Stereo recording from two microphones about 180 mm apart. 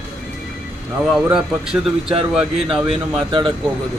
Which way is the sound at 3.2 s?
30° right (ahead or behind).